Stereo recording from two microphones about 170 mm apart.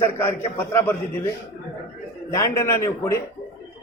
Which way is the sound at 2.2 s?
15° left (ahead or behind).